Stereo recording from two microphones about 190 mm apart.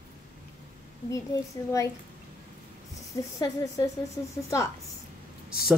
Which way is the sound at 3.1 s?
15° left (ahead or behind).